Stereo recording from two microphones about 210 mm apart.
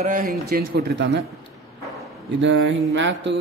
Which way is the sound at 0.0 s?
40° right (ahead or behind).